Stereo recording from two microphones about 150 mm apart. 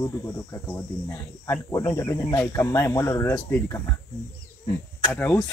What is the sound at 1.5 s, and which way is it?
Speech, 20° left (ahead or behind).